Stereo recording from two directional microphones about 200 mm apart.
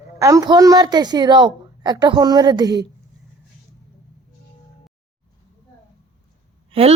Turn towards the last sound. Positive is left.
turn(degrees=-30)  # may be behind; listen again after turning